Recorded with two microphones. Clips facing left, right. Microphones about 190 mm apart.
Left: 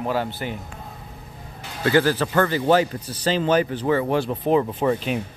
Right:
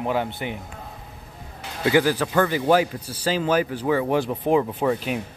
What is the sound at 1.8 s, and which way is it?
A man's voice, 15° right (ahead or behind).